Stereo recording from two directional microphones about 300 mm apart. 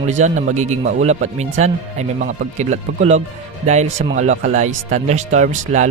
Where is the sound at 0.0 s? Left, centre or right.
Right.